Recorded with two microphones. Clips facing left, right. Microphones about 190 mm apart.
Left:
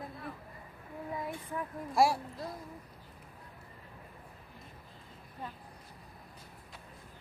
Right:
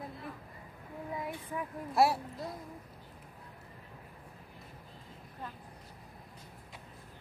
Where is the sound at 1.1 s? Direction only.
5° right (ahead or behind).